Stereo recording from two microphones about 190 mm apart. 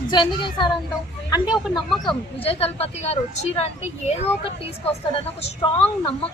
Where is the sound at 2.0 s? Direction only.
25° left (ahead or behind).